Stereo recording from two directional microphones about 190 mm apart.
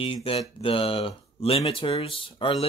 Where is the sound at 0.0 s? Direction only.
30° left (ahead or behind).